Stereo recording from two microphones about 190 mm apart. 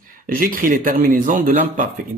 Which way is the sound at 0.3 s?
50° right (ahead or behind).